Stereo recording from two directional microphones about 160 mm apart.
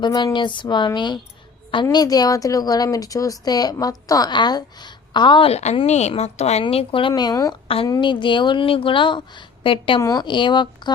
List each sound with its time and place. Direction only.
0.0 s a woman's voice: 25° left (ahead or behind)
7.1 s a woman's voice: 25° left (ahead or behind)